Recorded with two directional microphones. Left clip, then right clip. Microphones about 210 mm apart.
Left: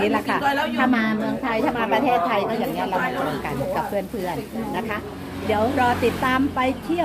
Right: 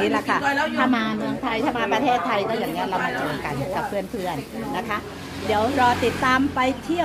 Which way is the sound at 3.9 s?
15° right (ahead or behind).